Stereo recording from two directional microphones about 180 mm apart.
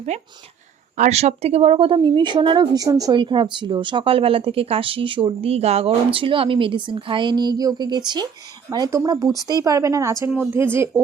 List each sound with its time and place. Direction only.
0.9 s a woman's voice: 40° right (ahead or behind); by 11.0 s 15° right (ahead or behind)